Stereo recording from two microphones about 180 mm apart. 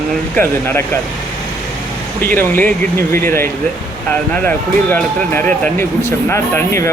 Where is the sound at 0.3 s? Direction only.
10° left (ahead or behind).